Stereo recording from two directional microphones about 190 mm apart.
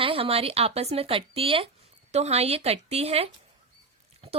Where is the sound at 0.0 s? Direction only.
30° right (ahead or behind).